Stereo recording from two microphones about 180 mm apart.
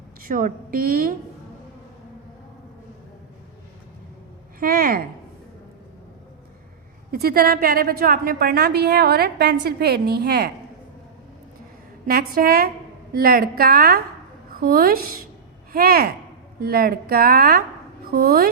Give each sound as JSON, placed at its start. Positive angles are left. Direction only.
{"t": 0.2, "sound": "a woman's voice", "side_deg": -50}
{"t": 4.6, "sound": "a woman's voice", "side_deg": -55}
{"t": 7.1, "sound": "a woman's voice", "side_deg": -55}
{"t": 12.0, "sound": "a woman's voice", "side_deg": -55}